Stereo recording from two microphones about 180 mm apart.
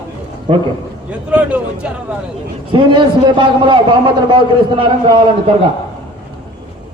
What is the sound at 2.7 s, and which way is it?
A man's voice, 25° right (ahead or behind).